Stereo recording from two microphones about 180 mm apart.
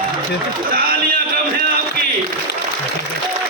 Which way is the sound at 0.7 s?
55° right (ahead or behind).